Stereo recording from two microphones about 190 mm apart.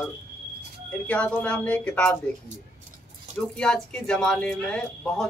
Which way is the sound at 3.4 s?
5° left (ahead or behind).